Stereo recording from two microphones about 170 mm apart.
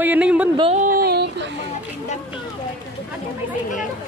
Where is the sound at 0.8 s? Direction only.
55° right (ahead or behind); by 1.4 s 75° right (ahead or behind).